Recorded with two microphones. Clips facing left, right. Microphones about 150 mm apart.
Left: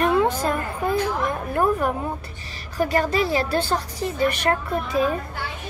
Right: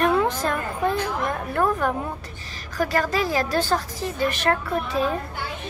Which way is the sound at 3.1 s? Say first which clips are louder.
Left 1 dB; 40° right (ahead or behind).